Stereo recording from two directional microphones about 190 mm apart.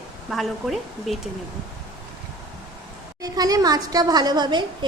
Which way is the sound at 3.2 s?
20° right (ahead or behind).